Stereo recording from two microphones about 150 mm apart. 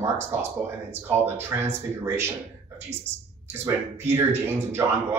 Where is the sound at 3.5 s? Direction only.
15° right (ahead or behind).